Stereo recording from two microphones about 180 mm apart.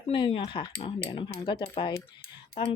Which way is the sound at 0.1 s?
30° left (ahead or behind).